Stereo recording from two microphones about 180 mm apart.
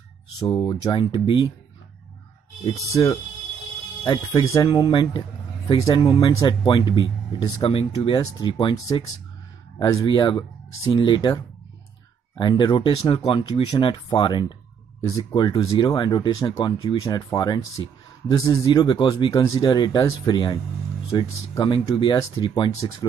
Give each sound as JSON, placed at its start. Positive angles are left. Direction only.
{"t": 0.6, "sound": "speech", "side_deg": 25}
{"t": 2.7, "sound": "speech", "side_deg": 20}